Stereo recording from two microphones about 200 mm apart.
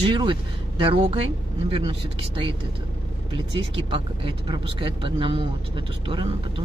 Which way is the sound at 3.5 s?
25° right (ahead or behind).